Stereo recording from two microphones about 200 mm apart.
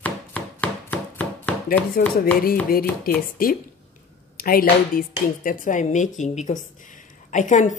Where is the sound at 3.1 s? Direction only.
50° left (ahead or behind).